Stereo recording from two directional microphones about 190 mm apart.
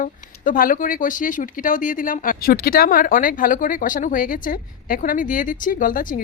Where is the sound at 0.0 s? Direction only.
45° left (ahead or behind).